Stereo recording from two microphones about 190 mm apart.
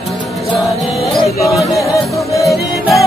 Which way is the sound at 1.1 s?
Centre (ahead or behind).